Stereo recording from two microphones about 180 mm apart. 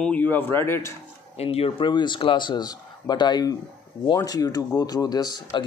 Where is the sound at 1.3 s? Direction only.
35° left (ahead or behind).